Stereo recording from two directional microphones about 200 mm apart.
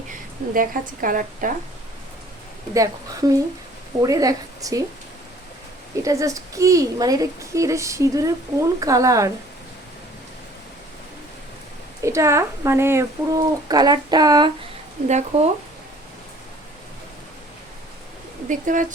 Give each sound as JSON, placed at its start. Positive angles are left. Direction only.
{"t": 0.1, "sound": "a woman's voice", "side_deg": -45}
{"t": 2.7, "sound": "speech", "side_deg": -15}
{"t": 6.0, "sound": "speech", "side_deg": -15}
{"t": 12.0, "sound": "speech", "side_deg": -15}
{"t": 15.0, "sound": "speech", "side_deg": -35}
{"t": 18.4, "sound": "speech", "side_deg": -40}